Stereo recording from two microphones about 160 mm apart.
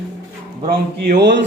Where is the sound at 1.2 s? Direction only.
90° right.